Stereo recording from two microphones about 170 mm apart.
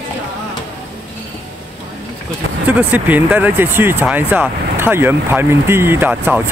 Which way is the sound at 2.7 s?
10° right (ahead or behind).